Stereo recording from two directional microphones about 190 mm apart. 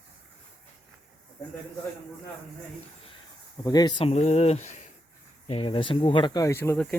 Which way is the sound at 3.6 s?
20° left (ahead or behind).